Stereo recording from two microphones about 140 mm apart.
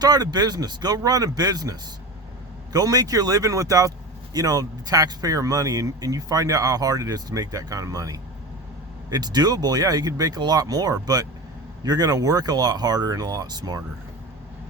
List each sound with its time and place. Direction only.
0.0 s speech: 30° right (ahead or behind)